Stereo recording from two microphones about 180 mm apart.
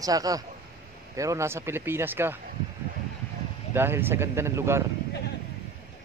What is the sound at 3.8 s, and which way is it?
A man's voice, 10° right (ahead or behind).